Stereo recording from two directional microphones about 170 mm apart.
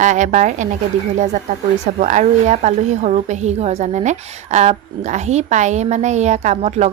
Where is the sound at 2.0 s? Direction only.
45° right (ahead or behind).